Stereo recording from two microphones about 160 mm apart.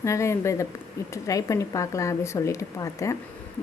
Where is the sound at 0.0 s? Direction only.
20° left (ahead or behind).